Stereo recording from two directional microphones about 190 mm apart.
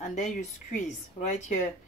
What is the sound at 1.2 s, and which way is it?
Speech, 40° left (ahead or behind).